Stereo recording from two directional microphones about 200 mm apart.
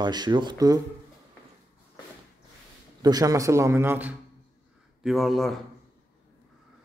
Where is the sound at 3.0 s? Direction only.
15° right (ahead or behind); by 5.5 s centre (ahead or behind).